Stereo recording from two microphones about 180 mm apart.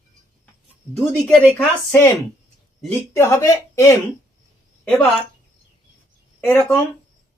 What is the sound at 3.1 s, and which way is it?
A woman's voice, 15° left (ahead or behind).